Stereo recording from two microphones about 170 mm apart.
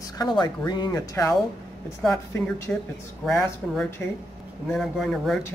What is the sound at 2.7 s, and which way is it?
Speech, 5° left (ahead or behind).